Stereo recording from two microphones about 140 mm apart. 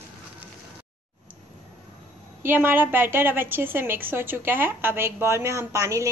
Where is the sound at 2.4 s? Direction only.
15° right (ahead or behind).